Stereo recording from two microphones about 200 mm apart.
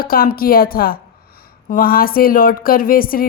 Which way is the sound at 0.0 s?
45° left (ahead or behind).